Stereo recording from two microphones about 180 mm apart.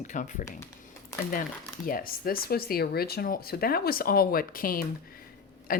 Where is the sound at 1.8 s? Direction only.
55° left (ahead or behind).